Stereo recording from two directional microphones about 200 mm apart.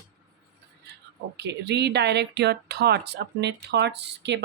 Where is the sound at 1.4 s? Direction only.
60° right (ahead or behind).